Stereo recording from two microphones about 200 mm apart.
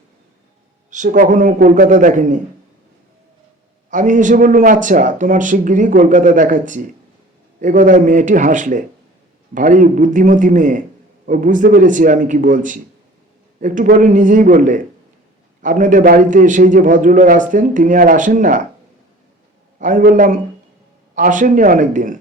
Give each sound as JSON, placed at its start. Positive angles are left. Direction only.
{"t": 0.9, "sound": "speech", "side_deg": -40}
{"t": 3.8, "sound": "speech", "side_deg": -40}
{"t": 19.8, "sound": "speech", "side_deg": -45}